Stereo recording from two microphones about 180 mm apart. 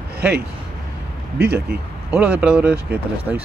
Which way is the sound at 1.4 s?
65° right (ahead or behind).